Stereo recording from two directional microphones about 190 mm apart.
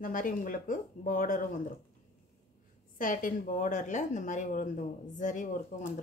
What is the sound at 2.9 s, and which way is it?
A woman's voice, 45° left (ahead or behind).